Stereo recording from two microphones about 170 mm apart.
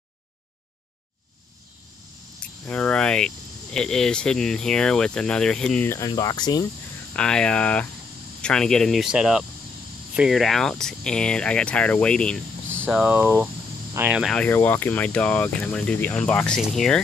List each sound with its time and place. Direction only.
2.4 s speech: 5° left (ahead or behind)
5.9 s speech: 20° left (ahead or behind)
7.2 s speech: 5° left (ahead or behind)
12.8 s speech: 5° right (ahead or behind)
14.3 s speech: 10° left (ahead or behind)